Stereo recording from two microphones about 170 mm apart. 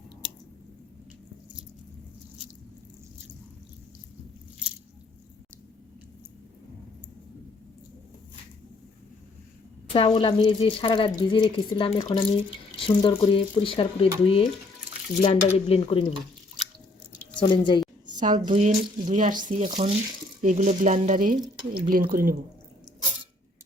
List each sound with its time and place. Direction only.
9.9 s speech: 35° left (ahead or behind)
15.2 s speech: 35° left (ahead or behind)
17.4 s a woman's voice: 25° left (ahead or behind)
18.0 s speech: 45° right (ahead or behind)
21.3 s speech: 25° right (ahead or behind)
21.8 s speech: 55° right (ahead or behind)
22.9 s a sound: 5° left (ahead or behind)